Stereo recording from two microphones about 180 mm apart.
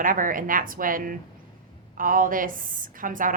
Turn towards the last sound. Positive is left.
turn(degrees=-50)  # may be behind; listen again after turning